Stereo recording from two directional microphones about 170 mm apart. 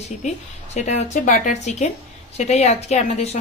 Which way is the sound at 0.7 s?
40° left (ahead or behind).